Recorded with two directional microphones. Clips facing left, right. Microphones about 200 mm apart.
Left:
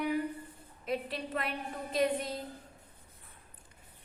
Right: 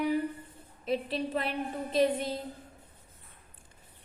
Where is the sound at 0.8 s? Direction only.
25° right (ahead or behind).